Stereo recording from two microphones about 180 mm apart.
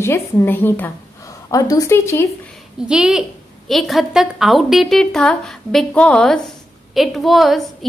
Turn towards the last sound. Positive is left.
turn(degrees=0)  # may be behind; listen again after turning